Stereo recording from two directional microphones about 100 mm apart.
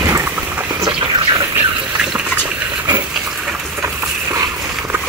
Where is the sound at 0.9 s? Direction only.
55° right (ahead or behind).